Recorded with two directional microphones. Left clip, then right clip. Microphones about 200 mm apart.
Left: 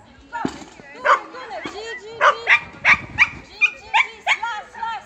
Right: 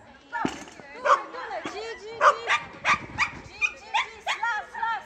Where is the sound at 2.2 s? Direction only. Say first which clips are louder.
Left 6 dB; 25° left (ahead or behind).